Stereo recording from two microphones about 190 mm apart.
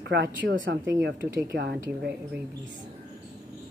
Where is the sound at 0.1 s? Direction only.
65° right (ahead or behind).